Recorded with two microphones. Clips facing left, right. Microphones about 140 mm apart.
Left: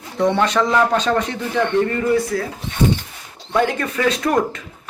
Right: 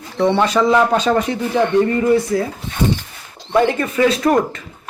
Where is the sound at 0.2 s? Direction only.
5° right (ahead or behind).